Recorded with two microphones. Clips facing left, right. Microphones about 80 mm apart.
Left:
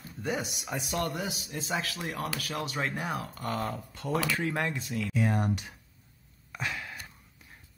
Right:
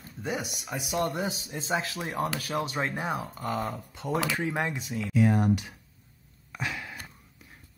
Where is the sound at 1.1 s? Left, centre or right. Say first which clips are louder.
Right 3 dB; right; by 5.1 s centre.